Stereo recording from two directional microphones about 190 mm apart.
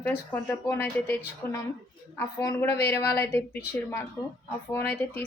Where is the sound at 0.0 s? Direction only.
10° left (ahead or behind).